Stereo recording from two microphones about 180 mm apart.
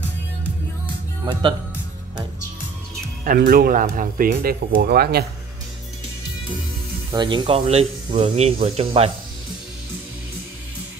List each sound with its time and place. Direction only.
1.2 s speech: 25° right (ahead or behind)
3.3 s speech: 55° right (ahead or behind)
7.1 s speech: 25° right (ahead or behind)